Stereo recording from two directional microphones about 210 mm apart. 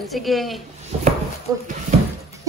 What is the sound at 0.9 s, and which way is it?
Speech, 30° right (ahead or behind).